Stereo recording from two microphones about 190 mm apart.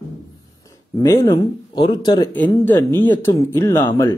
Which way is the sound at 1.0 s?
20° left (ahead or behind).